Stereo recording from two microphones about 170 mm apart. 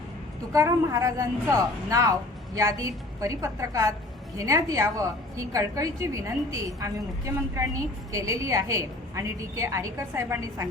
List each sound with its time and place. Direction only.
0.5 s a woman's voice: 20° right (ahead or behind)